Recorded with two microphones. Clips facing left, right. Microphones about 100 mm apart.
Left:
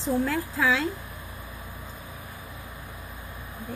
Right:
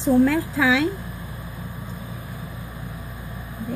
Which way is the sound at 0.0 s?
70° right (ahead or behind).